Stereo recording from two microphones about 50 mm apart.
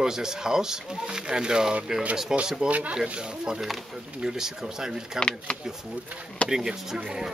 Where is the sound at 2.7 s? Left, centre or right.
Right; by 5.2 s centre.